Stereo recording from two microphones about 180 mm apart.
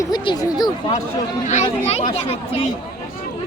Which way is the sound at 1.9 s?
35° left (ahead or behind).